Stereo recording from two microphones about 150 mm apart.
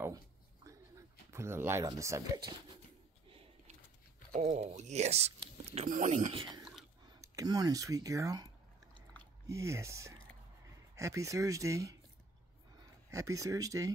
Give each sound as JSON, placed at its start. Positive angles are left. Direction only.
{"t": 0.7, "sound": "speech", "side_deg": -20}
{"t": 3.3, "sound": "a sound", "side_deg": -40}
{"t": 4.6, "sound": "speech", "side_deg": -45}
{"t": 6.3, "sound": "speech", "side_deg": -35}
{"t": 6.6, "sound": "a sound", "side_deg": 0}
{"t": 7.2, "sound": "speech", "side_deg": -25}
{"t": 9.5, "sound": "speech", "side_deg": -20}
{"t": 13.1, "sound": "speech", "side_deg": -20}